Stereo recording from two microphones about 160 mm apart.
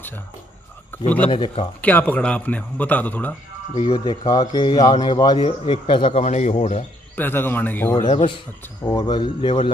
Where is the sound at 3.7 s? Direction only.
35° left (ahead or behind).